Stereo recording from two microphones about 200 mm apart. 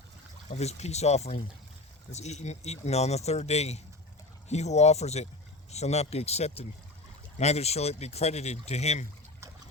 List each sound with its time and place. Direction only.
0.5 s speech: 35° left (ahead or behind)